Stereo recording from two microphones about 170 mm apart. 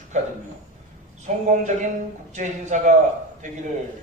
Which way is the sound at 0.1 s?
45° right (ahead or behind).